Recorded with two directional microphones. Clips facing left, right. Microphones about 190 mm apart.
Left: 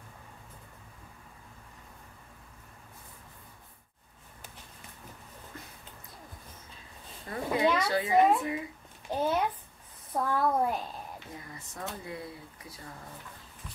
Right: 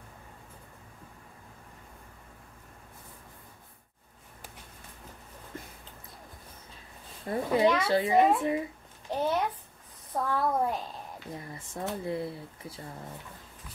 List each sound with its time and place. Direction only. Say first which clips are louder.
7.2 s speech: right 3 dB; 30° right (ahead or behind)
9.1 s a child's voice: even; centre (ahead or behind)
11.3 s speech: right 4 dB; 30° right (ahead or behind)